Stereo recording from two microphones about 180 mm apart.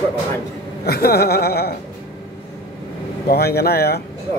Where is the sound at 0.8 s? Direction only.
60° left (ahead or behind).